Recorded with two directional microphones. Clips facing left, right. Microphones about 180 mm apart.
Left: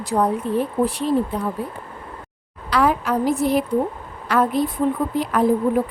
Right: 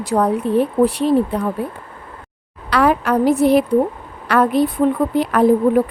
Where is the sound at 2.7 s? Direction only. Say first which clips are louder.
Right 3 dB; 65° right (ahead or behind).